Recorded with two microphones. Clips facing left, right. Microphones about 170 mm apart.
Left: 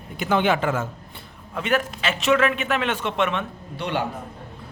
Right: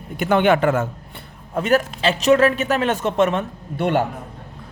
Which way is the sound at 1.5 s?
40° right (ahead or behind).